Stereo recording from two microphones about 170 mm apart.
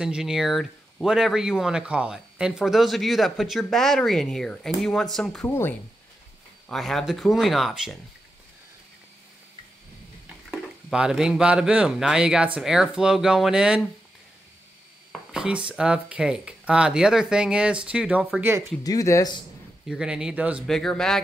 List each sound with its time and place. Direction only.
0.0 s speech: 5° right (ahead or behind)
10.5 s speech: 5° right (ahead or behind)
15.3 s speech: 5° right (ahead or behind)
18.8 s speech: 20° left (ahead or behind)
19.9 s speech: 5° right (ahead or behind)